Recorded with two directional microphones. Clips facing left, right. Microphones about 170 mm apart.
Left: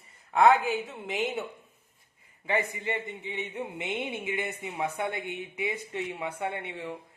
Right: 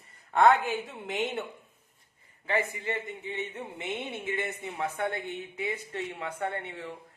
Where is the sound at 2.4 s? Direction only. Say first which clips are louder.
Even; 15° left (ahead or behind).